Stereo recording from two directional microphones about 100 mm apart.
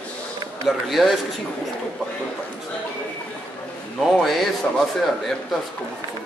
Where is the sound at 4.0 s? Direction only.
Centre (ahead or behind).